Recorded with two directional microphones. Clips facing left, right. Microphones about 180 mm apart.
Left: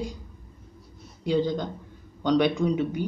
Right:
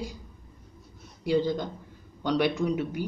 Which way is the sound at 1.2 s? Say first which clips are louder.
Left 1 dB; 10° right (ahead or behind).